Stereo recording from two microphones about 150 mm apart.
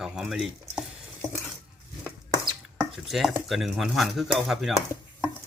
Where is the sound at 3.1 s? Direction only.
Centre (ahead or behind).